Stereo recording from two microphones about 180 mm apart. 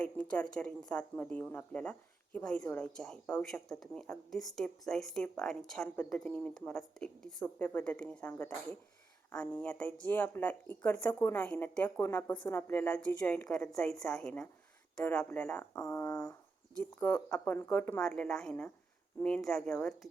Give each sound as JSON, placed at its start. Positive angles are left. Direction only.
{"t": 0.0, "sound": "speech", "side_deg": 5}
{"t": 15.8, "sound": "speech", "side_deg": 20}